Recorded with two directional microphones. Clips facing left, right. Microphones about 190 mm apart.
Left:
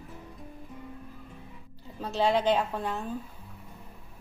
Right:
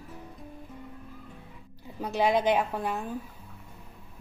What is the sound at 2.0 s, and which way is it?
A woman's voice, 15° right (ahead or behind).